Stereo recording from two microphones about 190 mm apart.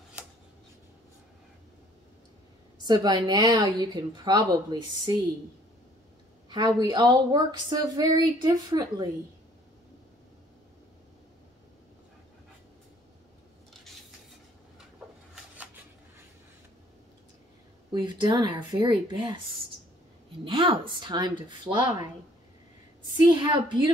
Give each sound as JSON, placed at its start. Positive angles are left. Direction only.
{"t": 2.8, "sound": "speech", "side_deg": -20}
{"t": 6.5, "sound": "speech", "side_deg": -25}
{"t": 15.5, "sound": "a sound", "side_deg": -10}
{"t": 17.9, "sound": "speech", "side_deg": -25}
{"t": 20.4, "sound": "speech", "side_deg": -25}
{"t": 23.2, "sound": "speech", "side_deg": -25}